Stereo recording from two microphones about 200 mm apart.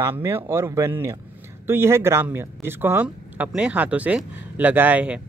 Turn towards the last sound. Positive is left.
turn(degrees=-5)  # may be behind; listen again after turning